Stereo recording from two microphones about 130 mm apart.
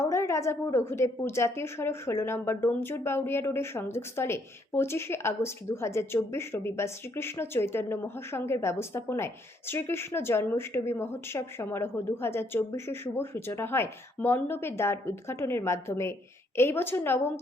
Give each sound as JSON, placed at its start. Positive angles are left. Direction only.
{"t": 0.0, "sound": "a woman's voice", "side_deg": 20}